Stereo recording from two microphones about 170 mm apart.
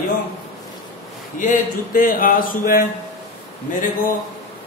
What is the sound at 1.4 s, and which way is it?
A man's voice, 50° left (ahead or behind).